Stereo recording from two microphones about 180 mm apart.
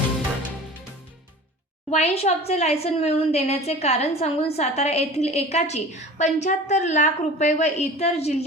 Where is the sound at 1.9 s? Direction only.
40° left (ahead or behind).